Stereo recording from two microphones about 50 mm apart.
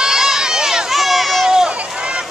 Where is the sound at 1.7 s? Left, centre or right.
Right.